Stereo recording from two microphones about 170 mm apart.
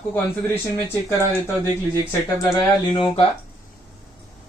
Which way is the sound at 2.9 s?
30° left (ahead or behind).